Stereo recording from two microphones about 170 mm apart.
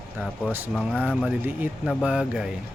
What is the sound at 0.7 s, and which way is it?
Speech, 5° right (ahead or behind).